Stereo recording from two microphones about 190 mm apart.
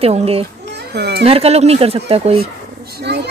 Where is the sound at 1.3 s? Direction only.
30° right (ahead or behind).